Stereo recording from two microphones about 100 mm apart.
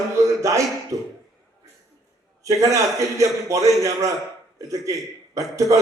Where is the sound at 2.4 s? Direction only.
30° right (ahead or behind).